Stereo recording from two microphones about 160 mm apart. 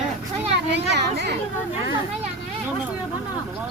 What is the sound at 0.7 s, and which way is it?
Speech, 90° right.